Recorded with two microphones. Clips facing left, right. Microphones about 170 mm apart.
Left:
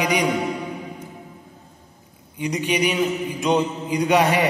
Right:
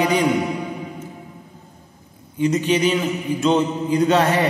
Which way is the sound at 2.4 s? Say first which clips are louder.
Right 4 dB; 15° left (ahead or behind).